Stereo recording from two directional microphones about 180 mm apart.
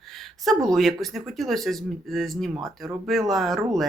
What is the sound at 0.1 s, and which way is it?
Speech, centre (ahead or behind).